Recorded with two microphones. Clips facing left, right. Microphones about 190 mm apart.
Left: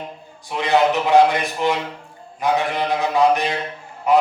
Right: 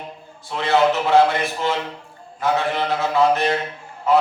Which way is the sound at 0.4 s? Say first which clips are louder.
Even; 15° left (ahead or behind).